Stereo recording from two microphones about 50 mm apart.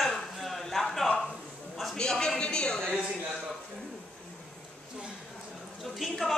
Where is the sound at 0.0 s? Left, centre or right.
Centre.